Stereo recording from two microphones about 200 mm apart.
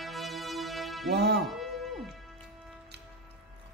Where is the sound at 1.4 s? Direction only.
Centre (ahead or behind).